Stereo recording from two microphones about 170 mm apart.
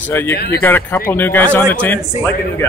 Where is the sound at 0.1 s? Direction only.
15° left (ahead or behind).